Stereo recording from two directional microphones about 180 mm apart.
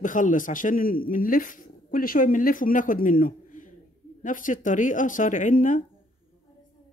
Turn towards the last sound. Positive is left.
turn(degrees=45)  # may be behind; listen again after turning